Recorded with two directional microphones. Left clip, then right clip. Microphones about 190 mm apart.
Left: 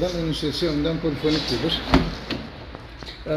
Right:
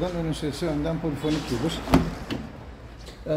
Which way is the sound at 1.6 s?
35° right (ahead or behind).